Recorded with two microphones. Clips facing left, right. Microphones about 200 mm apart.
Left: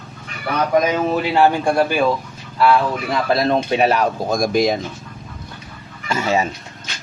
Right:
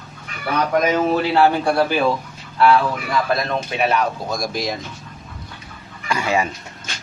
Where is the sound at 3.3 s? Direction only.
35° left (ahead or behind); by 4.8 s 55° left (ahead or behind).